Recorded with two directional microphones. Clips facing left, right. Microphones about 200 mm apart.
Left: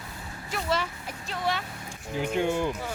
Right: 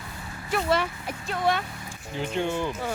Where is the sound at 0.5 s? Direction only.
60° right (ahead or behind).